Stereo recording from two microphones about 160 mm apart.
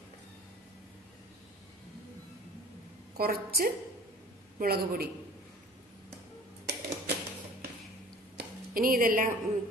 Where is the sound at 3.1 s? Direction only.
70° right (ahead or behind).